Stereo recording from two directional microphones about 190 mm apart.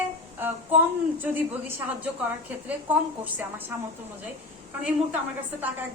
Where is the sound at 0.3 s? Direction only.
10° right (ahead or behind).